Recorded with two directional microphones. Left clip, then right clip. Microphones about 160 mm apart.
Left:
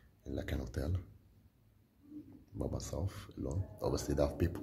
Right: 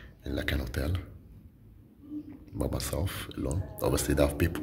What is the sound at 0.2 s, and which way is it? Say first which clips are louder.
Speech: right 9 dB; 20° left (ahead or behind).